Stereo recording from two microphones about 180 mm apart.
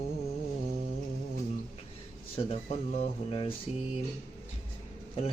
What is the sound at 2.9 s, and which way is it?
Speech, 30° left (ahead or behind).